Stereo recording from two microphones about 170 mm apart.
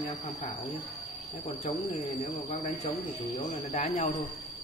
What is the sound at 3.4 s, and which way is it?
Speech, 40° left (ahead or behind).